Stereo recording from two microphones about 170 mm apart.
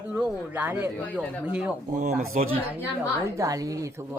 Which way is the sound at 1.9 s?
45° right (ahead or behind).